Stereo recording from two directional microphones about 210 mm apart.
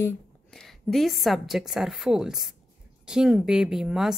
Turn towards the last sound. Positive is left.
turn(degrees=0)  # may be behind; listen again after turning